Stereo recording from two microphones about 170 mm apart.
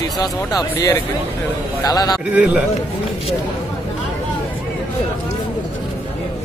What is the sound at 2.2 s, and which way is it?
Speech, 5° right (ahead or behind).